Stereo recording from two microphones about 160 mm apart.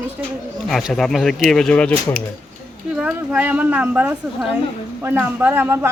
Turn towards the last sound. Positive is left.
turn(degrees=-15)  # may be behind; listen again after turning